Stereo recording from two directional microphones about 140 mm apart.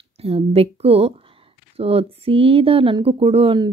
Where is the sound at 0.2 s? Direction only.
45° right (ahead or behind).